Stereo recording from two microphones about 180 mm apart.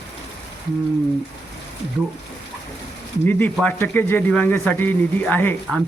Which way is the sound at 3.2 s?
10° left (ahead or behind).